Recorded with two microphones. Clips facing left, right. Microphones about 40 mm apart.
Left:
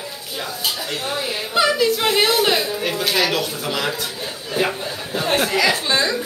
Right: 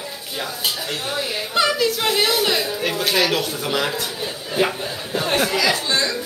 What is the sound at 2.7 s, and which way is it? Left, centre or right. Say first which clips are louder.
Speech: even; centre.